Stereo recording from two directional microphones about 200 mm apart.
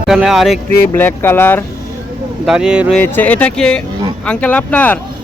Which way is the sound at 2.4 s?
5° right (ahead or behind).